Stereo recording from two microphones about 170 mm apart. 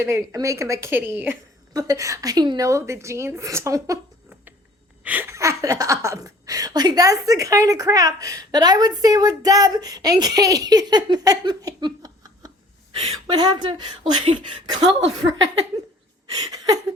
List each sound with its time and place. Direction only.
0.0 s a woman's voice: 15° right (ahead or behind)
5.0 s a woman's voice: 10° right (ahead or behind); by 14.8 s 30° right (ahead or behind)
16.3 s a sound: 25° right (ahead or behind)